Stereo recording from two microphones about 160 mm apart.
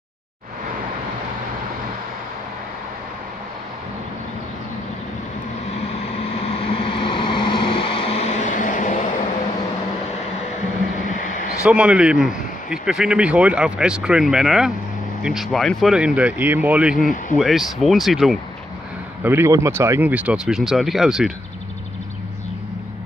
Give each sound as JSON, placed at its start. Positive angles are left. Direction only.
{"t": 6.4, "sound": "vehicle", "side_deg": 35}
{"t": 11.6, "sound": "a man's voice", "side_deg": -5}
{"t": 19.2, "sound": "speech", "side_deg": -15}